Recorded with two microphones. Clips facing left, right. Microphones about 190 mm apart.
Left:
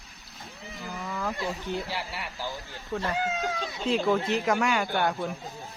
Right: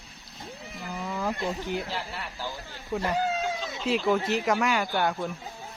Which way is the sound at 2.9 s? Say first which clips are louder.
Right 2 dB; 15° right (ahead or behind).